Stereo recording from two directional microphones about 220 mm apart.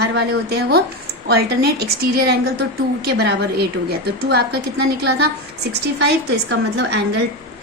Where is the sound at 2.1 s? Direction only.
45° right (ahead or behind).